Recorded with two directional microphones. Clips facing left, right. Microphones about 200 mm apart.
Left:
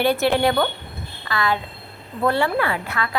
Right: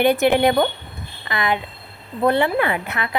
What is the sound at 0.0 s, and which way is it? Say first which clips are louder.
A child's voice: right 3 dB; 15° right (ahead or behind).